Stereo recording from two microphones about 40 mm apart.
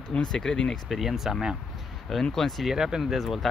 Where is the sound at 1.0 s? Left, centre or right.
Centre.